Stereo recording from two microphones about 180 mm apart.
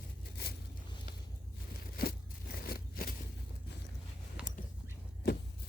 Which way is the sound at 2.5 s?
55° left (ahead or behind).